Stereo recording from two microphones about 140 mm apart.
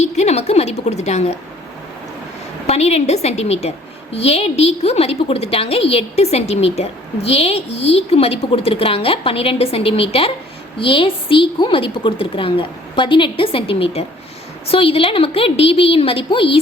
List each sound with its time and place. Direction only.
0.0 s a woman's voice: 50° left (ahead or behind)
2.6 s a woman's voice: 50° left (ahead or behind)